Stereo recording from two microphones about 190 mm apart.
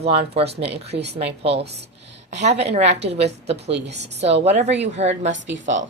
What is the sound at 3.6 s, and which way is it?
Speech, 65° right (ahead or behind).